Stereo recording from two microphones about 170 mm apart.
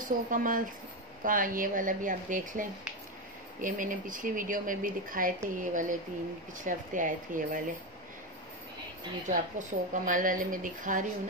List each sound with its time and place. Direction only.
0.0 s a woman's voice: 50° right (ahead or behind)
9.3 s a woman's voice: 50° right (ahead or behind)